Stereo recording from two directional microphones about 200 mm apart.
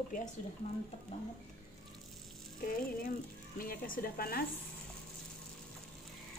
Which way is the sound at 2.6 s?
45° left (ahead or behind).